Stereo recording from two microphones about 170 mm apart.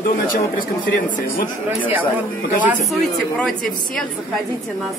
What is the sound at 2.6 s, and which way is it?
Speech, 10° right (ahead or behind).